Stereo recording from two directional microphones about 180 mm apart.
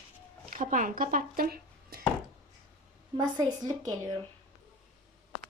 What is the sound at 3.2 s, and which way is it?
Speech, 20° right (ahead or behind).